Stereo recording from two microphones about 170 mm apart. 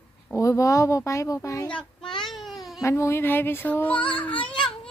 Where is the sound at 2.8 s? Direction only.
15° left (ahead or behind).